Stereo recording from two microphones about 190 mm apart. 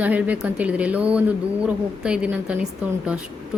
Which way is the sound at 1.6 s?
5° right (ahead or behind).